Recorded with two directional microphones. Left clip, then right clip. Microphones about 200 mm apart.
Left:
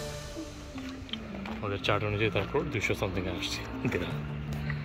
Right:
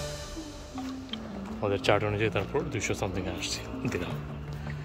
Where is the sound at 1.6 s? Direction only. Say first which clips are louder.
Right 4 dB; 25° right (ahead or behind); by 3.1 s 10° right (ahead or behind).